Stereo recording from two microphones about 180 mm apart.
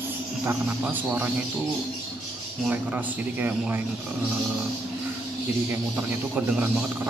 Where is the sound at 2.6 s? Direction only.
10° right (ahead or behind).